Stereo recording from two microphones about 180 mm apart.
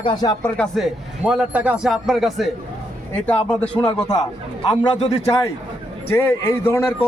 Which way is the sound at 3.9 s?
20° left (ahead or behind).